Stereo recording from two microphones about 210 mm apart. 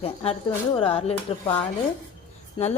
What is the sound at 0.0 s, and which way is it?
Speech, 30° left (ahead or behind).